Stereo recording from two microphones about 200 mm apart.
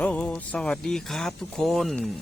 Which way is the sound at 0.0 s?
5° left (ahead or behind).